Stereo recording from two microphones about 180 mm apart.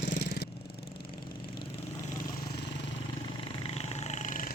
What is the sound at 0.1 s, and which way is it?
Vehicle, 55° left (ahead or behind).